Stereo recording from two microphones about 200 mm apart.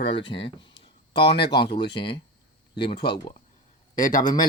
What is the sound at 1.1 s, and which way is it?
Speech, 55° left (ahead or behind).